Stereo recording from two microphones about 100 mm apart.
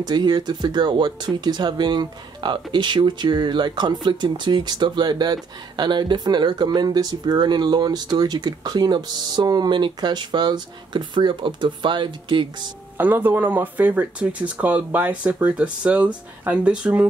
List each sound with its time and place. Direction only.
0.0 s speech: 45° right (ahead or behind)
12.9 s speech: 20° right (ahead or behind)